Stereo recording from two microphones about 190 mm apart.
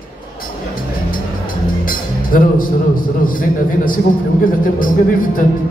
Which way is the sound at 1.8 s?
45° left (ahead or behind).